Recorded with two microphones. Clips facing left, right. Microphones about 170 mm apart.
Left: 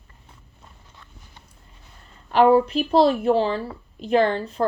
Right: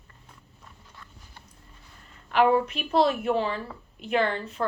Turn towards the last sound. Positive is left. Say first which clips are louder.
# left 6 dB
turn(degrees=35)  # may be behind; listen again after turning